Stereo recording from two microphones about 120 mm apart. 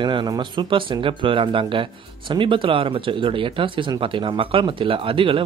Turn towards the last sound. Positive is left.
turn(degrees=-45)  # may be behind; listen again after turning